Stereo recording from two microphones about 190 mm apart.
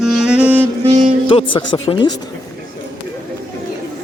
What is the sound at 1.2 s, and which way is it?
Speech, 25° left (ahead or behind).